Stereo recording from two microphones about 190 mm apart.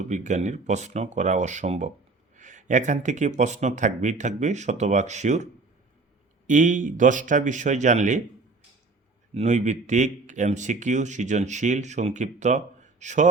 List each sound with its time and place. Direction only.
0.0 s speech: 40° right (ahead or behind)
6.5 s speech: 40° right (ahead or behind)
9.3 s speech: 35° right (ahead or behind)